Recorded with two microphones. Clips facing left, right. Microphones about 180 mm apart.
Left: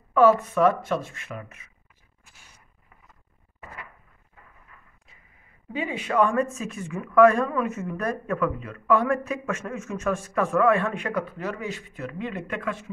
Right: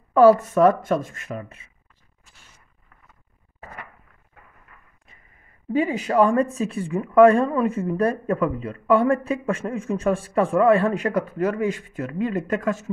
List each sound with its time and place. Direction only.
0.1 s speech: 40° right (ahead or behind)
5.7 s speech: 40° right (ahead or behind)